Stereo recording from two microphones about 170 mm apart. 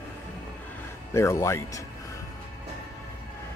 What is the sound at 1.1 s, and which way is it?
Speech, 15° left (ahead or behind).